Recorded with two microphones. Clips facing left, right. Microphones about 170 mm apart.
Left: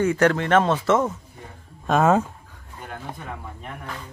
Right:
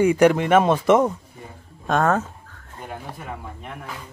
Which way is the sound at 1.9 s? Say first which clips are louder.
Left 2 dB; 5° left (ahead or behind).